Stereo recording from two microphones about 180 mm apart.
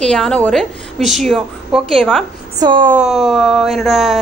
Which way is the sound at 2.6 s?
25° right (ahead or behind).